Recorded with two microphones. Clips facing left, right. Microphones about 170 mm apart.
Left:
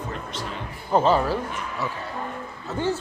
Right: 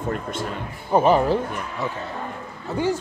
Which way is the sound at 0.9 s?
15° right (ahead or behind).